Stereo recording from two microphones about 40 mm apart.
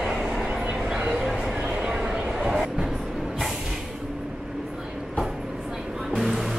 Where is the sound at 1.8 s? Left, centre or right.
Right.